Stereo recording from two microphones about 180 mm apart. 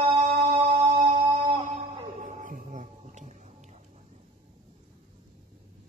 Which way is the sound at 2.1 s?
45° right (ahead or behind).